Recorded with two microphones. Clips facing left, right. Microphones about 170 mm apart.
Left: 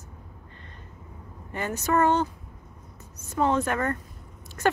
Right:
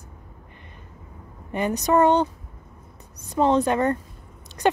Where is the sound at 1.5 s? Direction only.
15° right (ahead or behind).